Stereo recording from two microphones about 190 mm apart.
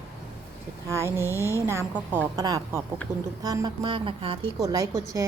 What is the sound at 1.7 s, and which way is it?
A woman's voice, 10° right (ahead or behind).